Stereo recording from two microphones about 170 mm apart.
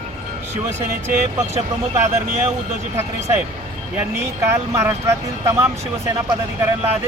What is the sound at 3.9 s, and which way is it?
Speech, 15° right (ahead or behind).